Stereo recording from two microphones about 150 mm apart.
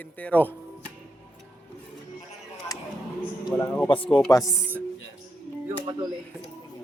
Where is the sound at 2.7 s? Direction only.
25° left (ahead or behind).